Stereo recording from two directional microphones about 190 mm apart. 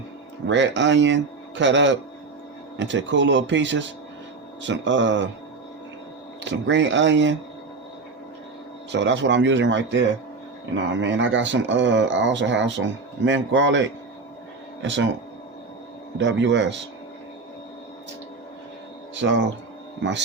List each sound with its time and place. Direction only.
0.4 s speech: 70° right (ahead or behind)
6.4 s speech: 70° right (ahead or behind)
8.9 s speech: 70° right (ahead or behind)
16.1 s speech: 70° right (ahead or behind)
19.1 s speech: 70° right (ahead or behind)